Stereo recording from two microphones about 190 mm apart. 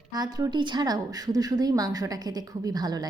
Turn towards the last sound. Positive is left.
turn(degrees=-20)  # may be behind; listen again after turning